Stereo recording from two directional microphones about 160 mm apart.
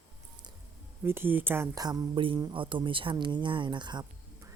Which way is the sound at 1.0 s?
15° right (ahead or behind).